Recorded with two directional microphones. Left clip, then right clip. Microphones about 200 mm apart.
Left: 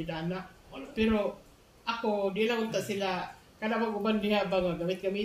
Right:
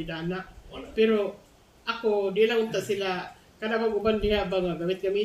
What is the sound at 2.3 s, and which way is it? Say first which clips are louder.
A man's voice: right 6 dB; 20° left (ahead or behind).